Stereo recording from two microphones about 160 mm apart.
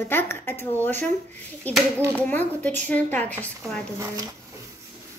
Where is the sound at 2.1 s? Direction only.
10° left (ahead or behind).